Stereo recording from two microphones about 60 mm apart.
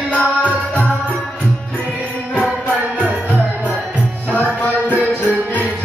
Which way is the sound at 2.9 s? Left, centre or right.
Right.